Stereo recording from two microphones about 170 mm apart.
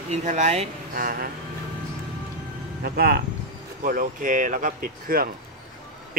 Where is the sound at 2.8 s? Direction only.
65° right (ahead or behind).